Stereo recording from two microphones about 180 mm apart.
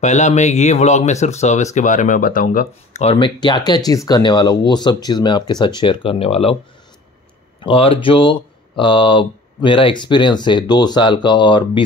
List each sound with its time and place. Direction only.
0.0 s speech: 40° left (ahead or behind)
7.6 s speech: 30° left (ahead or behind)